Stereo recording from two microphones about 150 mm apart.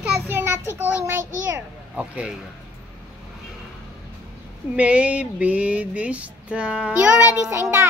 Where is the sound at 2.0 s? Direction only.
5° right (ahead or behind).